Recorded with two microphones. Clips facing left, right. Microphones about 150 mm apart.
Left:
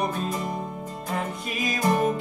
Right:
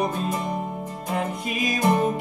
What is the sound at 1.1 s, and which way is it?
Music, 15° right (ahead or behind).